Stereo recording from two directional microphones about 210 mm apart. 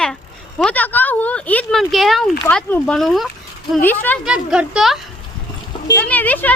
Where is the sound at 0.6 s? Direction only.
5° left (ahead or behind).